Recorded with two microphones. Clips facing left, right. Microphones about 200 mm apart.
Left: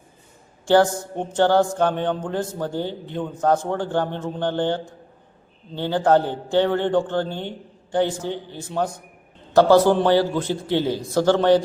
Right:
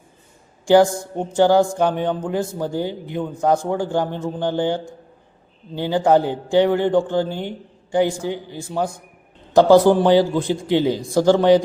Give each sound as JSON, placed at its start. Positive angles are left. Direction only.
{"t": 0.6, "sound": "a man's voice", "side_deg": -10}